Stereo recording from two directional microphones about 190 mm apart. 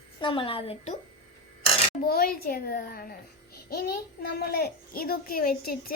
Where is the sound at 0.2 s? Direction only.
25° left (ahead or behind).